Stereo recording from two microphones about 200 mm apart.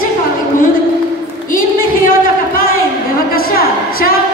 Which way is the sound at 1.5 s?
45° left (ahead or behind).